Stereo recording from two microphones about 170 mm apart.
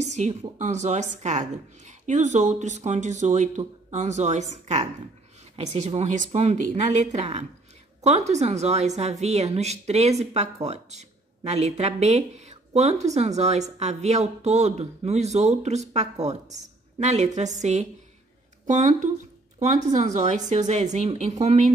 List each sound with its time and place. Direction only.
0.3 s a woman's voice: 40° right (ahead or behind)